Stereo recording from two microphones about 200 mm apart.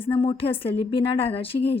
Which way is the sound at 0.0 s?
25° left (ahead or behind).